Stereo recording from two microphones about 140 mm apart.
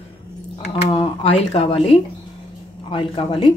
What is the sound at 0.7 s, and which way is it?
Speech, 40° left (ahead or behind).